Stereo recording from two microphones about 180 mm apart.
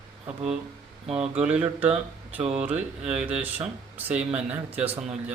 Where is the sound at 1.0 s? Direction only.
35° right (ahead or behind).